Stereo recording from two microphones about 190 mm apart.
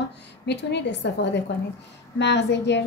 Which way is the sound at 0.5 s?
65° left (ahead or behind).